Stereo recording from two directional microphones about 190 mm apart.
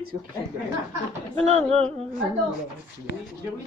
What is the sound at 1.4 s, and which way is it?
Speech, 30° right (ahead or behind).